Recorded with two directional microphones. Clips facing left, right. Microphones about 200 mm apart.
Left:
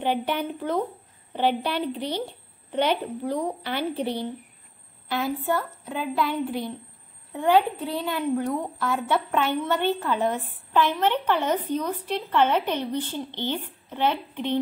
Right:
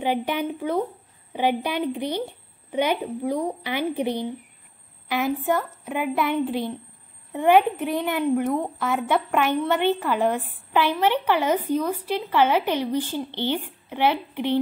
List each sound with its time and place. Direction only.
0.0 s a woman's voice: 10° right (ahead or behind)